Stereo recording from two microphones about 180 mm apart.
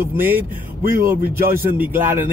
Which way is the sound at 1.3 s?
50° right (ahead or behind).